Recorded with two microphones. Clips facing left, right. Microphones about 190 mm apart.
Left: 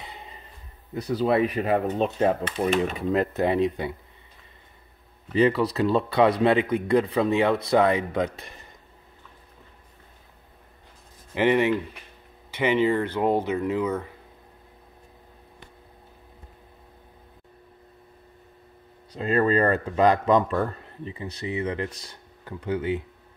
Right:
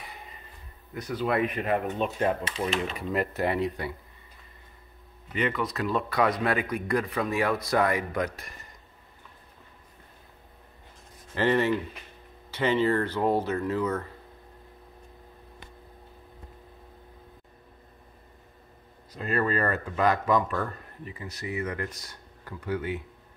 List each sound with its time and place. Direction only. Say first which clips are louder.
1.0 s speech: left 5 dB; 30° left (ahead or behind)
2.4 s speech: left 6 dB; 55° left (ahead or behind)
2.8 s speech: left 5 dB; 20° left (ahead or behind)
5.3 s speech: left 8 dB; 30° left (ahead or behind)
11.3 s speech: left 3 dB; 15° left (ahead or behind)
19.1 s speech: left 6 dB; 25° left (ahead or behind)